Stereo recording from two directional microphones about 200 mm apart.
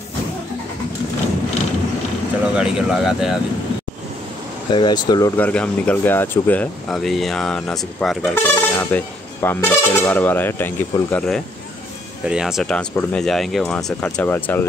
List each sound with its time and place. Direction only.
2.5 s speech: 5° right (ahead or behind)
4.7 s speech: 20° left (ahead or behind)
5.4 s speech: 5° left (ahead or behind)